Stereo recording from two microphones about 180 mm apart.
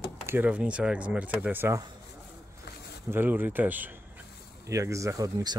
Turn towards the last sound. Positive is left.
turn(degrees=-20)  # may be behind; listen again after turning